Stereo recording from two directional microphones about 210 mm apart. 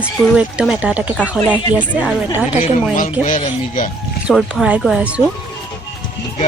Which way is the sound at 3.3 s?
40° left (ahead or behind).